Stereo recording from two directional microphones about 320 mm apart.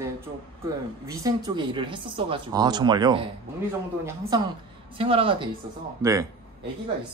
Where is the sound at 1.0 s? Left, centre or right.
Centre.